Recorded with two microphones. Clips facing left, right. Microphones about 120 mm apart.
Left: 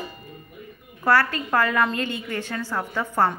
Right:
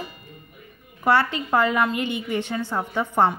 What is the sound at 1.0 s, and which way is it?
A woman's voice, 20° right (ahead or behind).